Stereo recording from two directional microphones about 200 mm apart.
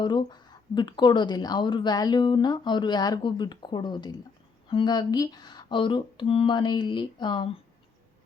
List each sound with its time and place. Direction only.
0.0 s a woman's voice: 20° left (ahead or behind)